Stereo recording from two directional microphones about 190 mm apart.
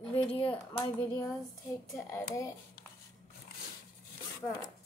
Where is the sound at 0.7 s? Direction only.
15° left (ahead or behind).